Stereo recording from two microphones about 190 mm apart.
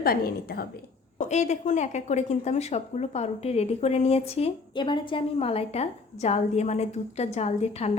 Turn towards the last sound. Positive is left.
turn(degrees=35)  # may be behind; listen again after turning